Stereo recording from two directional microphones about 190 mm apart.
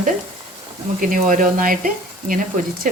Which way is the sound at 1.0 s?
45° right (ahead or behind).